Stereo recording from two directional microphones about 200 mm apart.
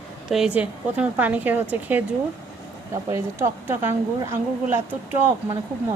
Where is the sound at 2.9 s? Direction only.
15° right (ahead or behind).